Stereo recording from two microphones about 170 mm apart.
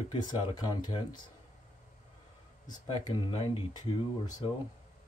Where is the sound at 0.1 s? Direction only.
25° left (ahead or behind).